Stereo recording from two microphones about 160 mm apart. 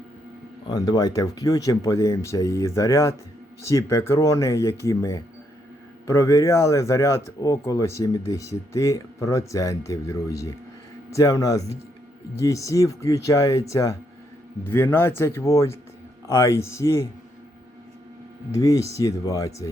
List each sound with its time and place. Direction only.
0.7 s speech: 25° left (ahead or behind)
18.5 s speech: 20° left (ahead or behind)